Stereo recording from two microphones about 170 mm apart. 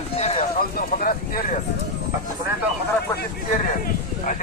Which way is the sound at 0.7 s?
55° left (ahead or behind).